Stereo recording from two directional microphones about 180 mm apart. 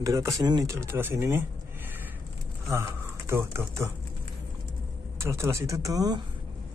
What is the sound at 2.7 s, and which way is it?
Speech, 15° right (ahead or behind).